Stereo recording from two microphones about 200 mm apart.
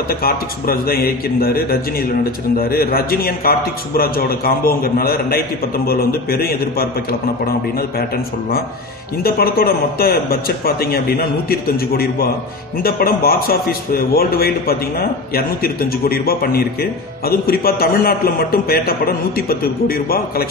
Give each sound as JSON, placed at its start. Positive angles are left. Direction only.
{"t": 0.1, "sound": "a man's voice", "side_deg": 50}
{"t": 9.2, "sound": "a man's voice", "side_deg": 50}